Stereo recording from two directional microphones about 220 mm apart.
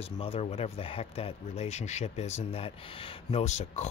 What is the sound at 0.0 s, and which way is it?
Speech, 25° left (ahead or behind).